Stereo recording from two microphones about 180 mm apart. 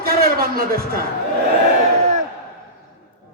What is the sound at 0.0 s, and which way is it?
A man's voice, 60° right (ahead or behind).